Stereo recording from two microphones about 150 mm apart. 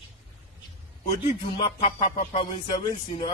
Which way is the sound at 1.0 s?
35° left (ahead or behind).